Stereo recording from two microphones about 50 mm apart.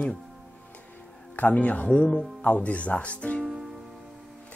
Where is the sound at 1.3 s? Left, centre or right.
Left.